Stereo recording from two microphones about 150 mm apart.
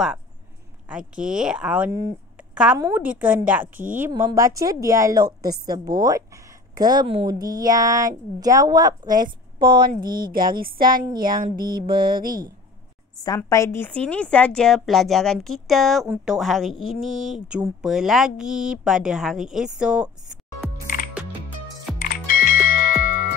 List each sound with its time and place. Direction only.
0.8 s speech: 5° right (ahead or behind)
1.9 s speech: 20° right (ahead or behind)
2.3 s a sound: 10° right (ahead or behind)
2.8 s speech: 10° right (ahead or behind)
4.3 s speech: 20° right (ahead or behind)
10.1 s speech: 75° right (ahead or behind)
13.5 s speech: 20° left (ahead or behind); by 20.1 s 5° right (ahead or behind)
20.8 s music: 65° left (ahead or behind)